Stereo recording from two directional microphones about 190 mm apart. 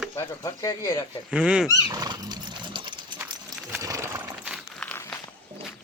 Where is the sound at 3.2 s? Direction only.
15° right (ahead or behind).